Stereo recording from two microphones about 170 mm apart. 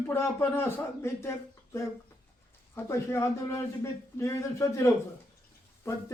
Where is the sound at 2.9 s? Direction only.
15° left (ahead or behind).